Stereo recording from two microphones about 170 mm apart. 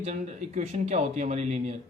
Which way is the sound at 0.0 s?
40° right (ahead or behind).